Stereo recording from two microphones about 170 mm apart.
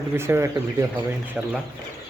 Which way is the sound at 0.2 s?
15° right (ahead or behind).